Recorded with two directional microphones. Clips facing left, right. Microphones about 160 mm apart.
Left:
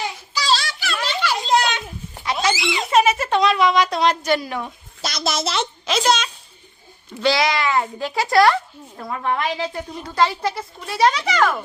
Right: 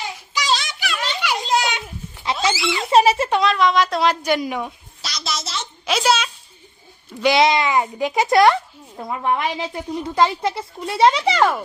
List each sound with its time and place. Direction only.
0.3 s children playing: 20° right (ahead or behind)
2.5 s giggle: 20° left (ahead or behind)
2.9 s a sound: 30° right (ahead or behind)
3.4 s speech: 5° left (ahead or behind); by 4.7 s 15° right (ahead or behind)
5.0 s a child's voice: 50° left (ahead or behind)
5.8 s a woman's voice: 10° right (ahead or behind)
7.2 s a woman's voice: 20° right (ahead or behind)